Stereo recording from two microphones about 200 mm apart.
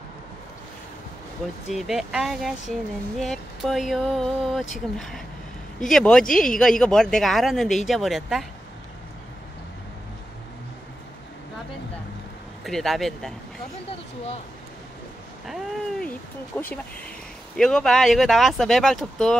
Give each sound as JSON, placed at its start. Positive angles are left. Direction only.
{"t": 1.7, "sound": "speech", "side_deg": 0}
{"t": 12.6, "sound": "speech", "side_deg": 0}
{"t": 13.8, "sound": "speech", "side_deg": 30}
{"t": 15.4, "sound": "a sound", "side_deg": 0}
{"t": 16.5, "sound": "speech", "side_deg": 10}